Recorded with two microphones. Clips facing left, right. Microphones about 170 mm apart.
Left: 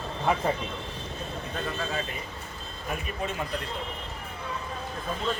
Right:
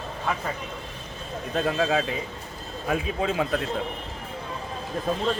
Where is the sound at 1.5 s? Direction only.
75° right (ahead or behind).